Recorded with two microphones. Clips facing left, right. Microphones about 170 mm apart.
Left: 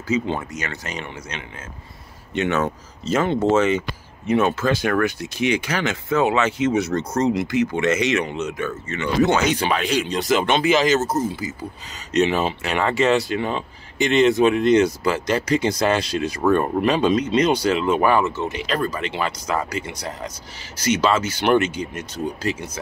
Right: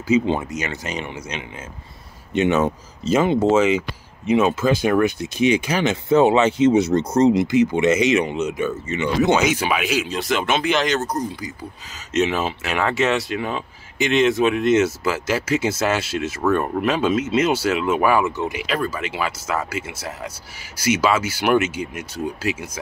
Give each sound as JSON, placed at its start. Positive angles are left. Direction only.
{"t": 0.1, "sound": "speech", "side_deg": -20}
{"t": 6.0, "sound": "speech", "side_deg": -30}